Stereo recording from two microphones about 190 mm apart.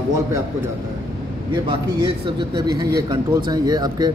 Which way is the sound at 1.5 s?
25° right (ahead or behind).